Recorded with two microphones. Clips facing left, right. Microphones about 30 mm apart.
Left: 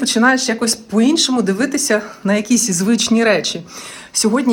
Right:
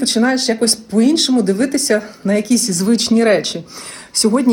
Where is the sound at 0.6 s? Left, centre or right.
Left.